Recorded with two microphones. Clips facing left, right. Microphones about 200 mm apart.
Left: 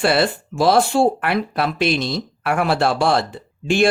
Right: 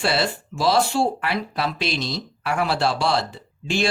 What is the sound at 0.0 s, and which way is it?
Speech, 55° left (ahead or behind).